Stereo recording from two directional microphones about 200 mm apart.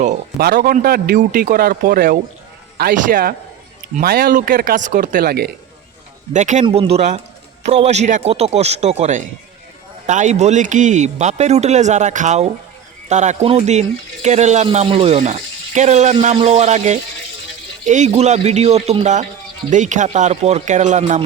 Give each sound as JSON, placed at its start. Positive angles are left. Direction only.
{"t": 0.3, "sound": "a man's voice", "side_deg": -50}
{"t": 6.3, "sound": "speech", "side_deg": -35}